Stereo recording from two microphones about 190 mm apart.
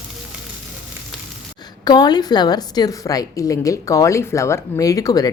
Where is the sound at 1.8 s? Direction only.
20° left (ahead or behind).